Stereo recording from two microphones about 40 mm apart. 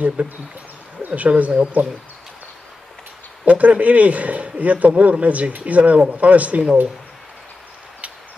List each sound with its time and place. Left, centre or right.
0.2 s speech: right
3.4 s speech: right